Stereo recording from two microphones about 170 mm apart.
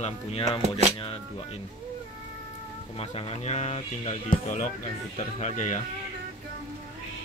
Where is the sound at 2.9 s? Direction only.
35° left (ahead or behind).